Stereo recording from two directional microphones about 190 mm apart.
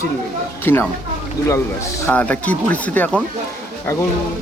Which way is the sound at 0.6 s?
10° left (ahead or behind).